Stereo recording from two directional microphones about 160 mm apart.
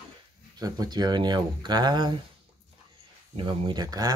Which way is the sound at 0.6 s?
25° right (ahead or behind).